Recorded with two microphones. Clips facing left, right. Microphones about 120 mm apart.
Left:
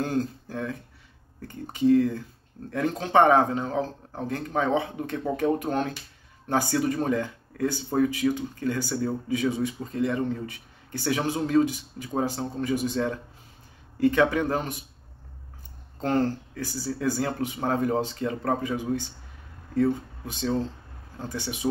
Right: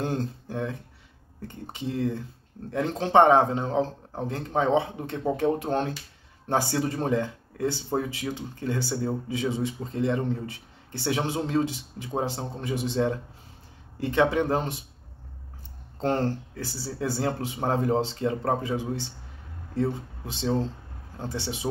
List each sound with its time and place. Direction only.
0.0 s speech: 25° right (ahead or behind)
16.0 s speech: 30° right (ahead or behind)